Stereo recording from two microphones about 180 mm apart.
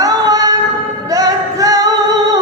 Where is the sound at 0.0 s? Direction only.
20° right (ahead or behind).